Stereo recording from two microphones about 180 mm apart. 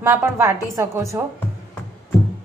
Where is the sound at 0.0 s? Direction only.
15° right (ahead or behind).